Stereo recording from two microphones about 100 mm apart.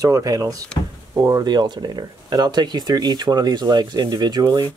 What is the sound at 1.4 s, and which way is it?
Speech, 45° right (ahead or behind).